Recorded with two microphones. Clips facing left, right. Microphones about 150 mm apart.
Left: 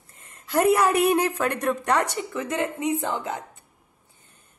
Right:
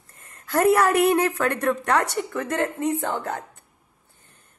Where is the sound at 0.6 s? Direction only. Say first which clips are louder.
Right 1 dB; 15° left (ahead or behind).